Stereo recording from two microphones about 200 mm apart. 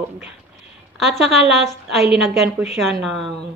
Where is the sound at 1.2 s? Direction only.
Centre (ahead or behind).